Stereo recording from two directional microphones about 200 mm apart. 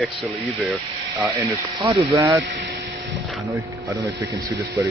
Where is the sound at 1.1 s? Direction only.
10° right (ahead or behind).